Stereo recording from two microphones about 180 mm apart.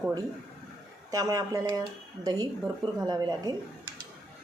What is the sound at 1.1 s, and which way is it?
Speech, 20° right (ahead or behind).